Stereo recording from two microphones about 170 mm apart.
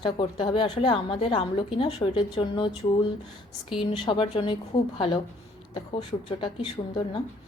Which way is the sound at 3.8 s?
30° left (ahead or behind).